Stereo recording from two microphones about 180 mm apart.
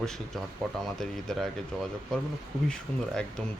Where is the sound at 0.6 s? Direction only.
Centre (ahead or behind).